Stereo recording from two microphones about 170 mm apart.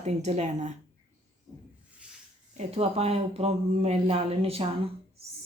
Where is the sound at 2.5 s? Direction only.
35° right (ahead or behind).